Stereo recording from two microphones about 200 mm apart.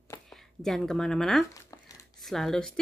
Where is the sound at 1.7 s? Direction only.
15° left (ahead or behind).